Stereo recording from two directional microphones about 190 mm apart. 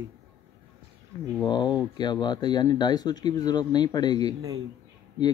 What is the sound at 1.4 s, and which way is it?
Speech, 20° left (ahead or behind).